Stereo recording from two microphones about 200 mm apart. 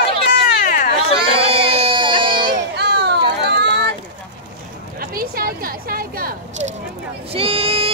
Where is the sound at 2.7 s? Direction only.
55° right (ahead or behind).